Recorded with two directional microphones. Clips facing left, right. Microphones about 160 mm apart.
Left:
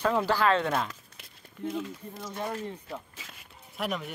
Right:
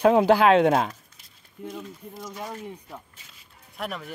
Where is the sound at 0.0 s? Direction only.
60° right (ahead or behind).